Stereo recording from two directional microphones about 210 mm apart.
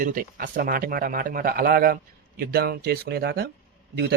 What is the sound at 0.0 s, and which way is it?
A man's voice, 40° right (ahead or behind).